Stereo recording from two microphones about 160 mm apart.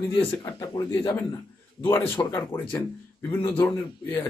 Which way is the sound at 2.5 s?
30° left (ahead or behind).